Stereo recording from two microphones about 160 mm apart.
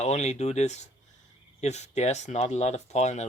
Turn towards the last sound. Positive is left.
turn(degrees=45)  # may be behind; listen again after turning